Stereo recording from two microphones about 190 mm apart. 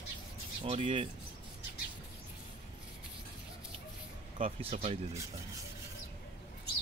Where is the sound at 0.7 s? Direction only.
30° right (ahead or behind).